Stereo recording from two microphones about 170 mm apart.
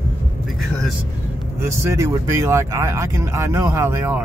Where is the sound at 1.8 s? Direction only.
20° right (ahead or behind).